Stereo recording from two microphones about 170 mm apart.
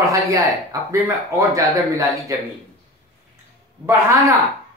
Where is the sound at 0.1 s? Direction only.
20° right (ahead or behind).